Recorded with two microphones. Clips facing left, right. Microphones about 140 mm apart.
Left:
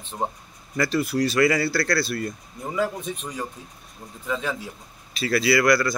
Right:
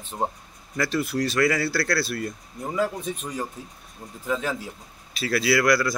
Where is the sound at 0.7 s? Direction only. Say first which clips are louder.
Left 2 dB; centre (ahead or behind).